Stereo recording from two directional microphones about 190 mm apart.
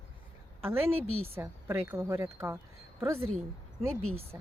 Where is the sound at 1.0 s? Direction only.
90° right.